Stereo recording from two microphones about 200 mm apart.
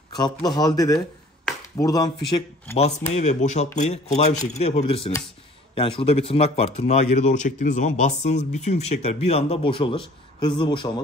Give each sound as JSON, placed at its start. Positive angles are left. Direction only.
{"t": 0.1, "sound": "speech", "side_deg": 20}
{"t": 3.2, "sound": "a man's voice", "side_deg": 35}